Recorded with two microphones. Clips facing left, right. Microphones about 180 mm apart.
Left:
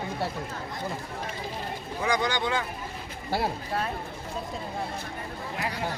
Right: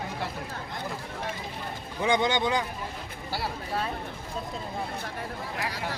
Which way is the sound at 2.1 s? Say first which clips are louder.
Right 2 dB; 25° right (ahead or behind).